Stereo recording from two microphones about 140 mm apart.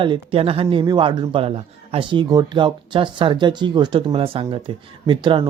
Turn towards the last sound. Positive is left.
turn(degrees=-35)  # may be behind; listen again after turning